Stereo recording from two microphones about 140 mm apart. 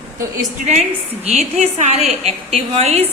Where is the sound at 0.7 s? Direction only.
50° right (ahead or behind).